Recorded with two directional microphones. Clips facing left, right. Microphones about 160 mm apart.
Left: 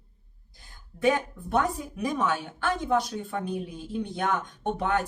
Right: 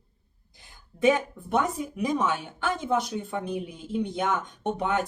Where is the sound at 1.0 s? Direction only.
20° right (ahead or behind).